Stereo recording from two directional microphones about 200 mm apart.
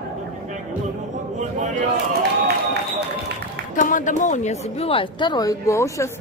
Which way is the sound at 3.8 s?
40° left (ahead or behind).